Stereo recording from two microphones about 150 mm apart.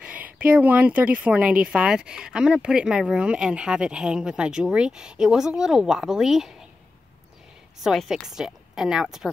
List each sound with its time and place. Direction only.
0.0 s speech: 10° right (ahead or behind)
7.8 s speech: centre (ahead or behind)